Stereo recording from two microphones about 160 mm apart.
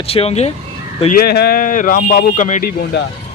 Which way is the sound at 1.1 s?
80° left.